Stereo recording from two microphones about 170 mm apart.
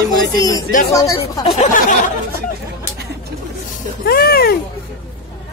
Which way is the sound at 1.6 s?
50° left (ahead or behind).